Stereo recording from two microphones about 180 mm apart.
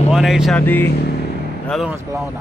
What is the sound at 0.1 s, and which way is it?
Speech, centre (ahead or behind).